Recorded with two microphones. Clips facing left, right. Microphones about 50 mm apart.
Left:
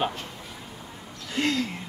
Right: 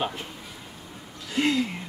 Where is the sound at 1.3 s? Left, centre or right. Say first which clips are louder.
Right 2 dB; centre.